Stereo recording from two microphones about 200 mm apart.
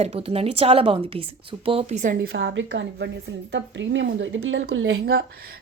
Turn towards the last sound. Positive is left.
turn(degrees=-75)  # may be behind; listen again after turning